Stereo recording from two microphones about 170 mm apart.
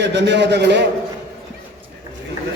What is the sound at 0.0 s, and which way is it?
Speech, 90° right.